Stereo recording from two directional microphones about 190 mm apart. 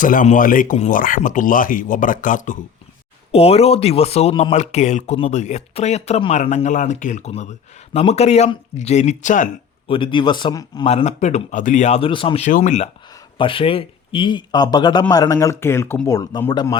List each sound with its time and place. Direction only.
0.0 s speech: 45° left (ahead or behind)
3.3 s speech: 30° left (ahead or behind)
9.8 s speech: 25° left (ahead or behind)
10.8 s speech: 35° left (ahead or behind)
12.5 s speech: 40° left (ahead or behind)
13.4 s a man's voice: 30° left (ahead or behind)